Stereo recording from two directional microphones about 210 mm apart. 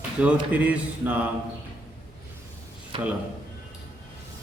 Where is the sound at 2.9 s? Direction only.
25° right (ahead or behind).